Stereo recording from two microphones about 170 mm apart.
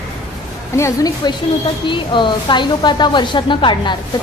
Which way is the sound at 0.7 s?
20° left (ahead or behind).